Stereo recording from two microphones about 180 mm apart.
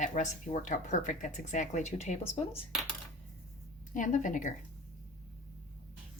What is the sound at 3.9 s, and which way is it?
Speech, 45° left (ahead or behind).